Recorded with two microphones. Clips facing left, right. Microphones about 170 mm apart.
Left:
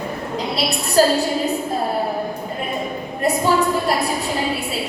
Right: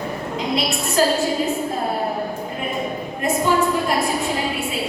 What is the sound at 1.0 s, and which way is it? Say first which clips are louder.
Speech: left 3 dB; 35° left (ahead or behind).